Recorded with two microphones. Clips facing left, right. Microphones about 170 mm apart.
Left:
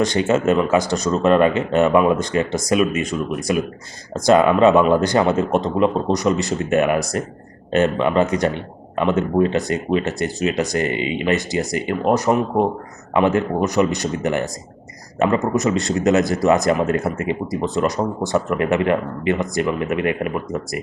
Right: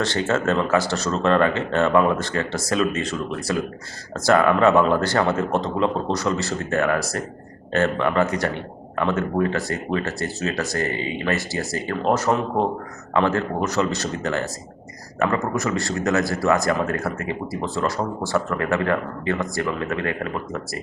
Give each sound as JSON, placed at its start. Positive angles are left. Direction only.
{"t": 0.0, "sound": "a man's voice", "side_deg": 15}